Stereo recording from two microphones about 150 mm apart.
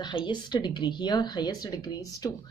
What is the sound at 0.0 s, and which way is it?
Speech, 30° left (ahead or behind).